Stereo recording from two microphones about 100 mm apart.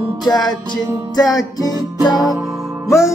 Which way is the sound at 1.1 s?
40° left (ahead or behind).